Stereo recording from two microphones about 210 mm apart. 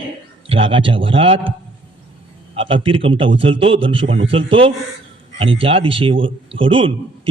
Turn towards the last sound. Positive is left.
turn(degrees=-25)  # may be behind; listen again after turning